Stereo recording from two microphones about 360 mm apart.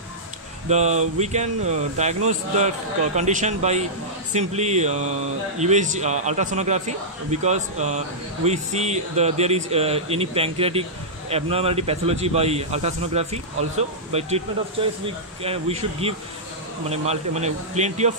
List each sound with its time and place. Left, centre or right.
0.7 s a man's voice: centre